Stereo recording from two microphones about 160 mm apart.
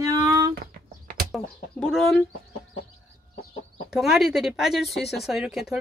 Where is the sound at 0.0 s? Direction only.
20° right (ahead or behind).